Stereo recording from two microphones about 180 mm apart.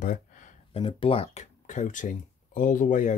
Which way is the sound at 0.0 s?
45° left (ahead or behind).